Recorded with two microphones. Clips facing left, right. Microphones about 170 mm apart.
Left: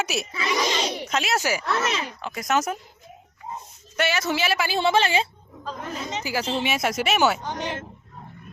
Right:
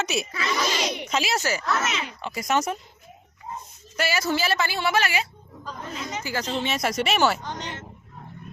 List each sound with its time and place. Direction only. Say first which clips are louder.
0.0 s a child's voice: even; 5° left (ahead or behind)
0.4 s speech: left 3 dB; 15° left (ahead or behind)
0.8 s speech: left 1 dB; 30° left (ahead or behind)
1.0 s a woman's voice: left 1 dB; centre (ahead or behind)
1.8 s speech: left 2 dB; 35° left (ahead or behind)
2.2 s a woman's voice: even; centre (ahead or behind)
3.9 s a woman's voice: left 1 dB; centre (ahead or behind)
4.8 s speech: left 7 dB; 25° left (ahead or behind)
6.3 s speech: left 2 dB; 10° left (ahead or behind)